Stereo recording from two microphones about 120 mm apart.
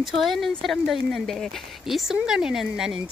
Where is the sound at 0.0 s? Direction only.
Centre (ahead or behind).